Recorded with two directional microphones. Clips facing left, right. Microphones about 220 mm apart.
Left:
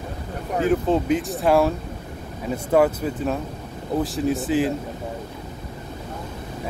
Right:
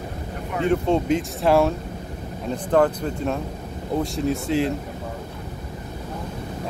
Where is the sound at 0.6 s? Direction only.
Centre (ahead or behind).